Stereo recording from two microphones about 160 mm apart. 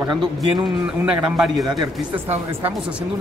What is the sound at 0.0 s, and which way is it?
Speech, 30° right (ahead or behind).